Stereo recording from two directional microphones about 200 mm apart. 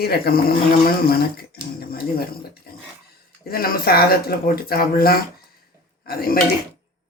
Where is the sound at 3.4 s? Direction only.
50° left (ahead or behind).